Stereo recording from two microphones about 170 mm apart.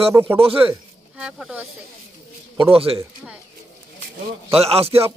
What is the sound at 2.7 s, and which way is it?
Speech, 35° right (ahead or behind).